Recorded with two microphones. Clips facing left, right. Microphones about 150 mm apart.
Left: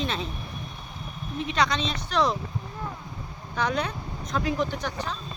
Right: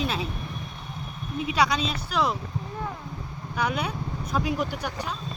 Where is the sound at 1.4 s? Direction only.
10° right (ahead or behind).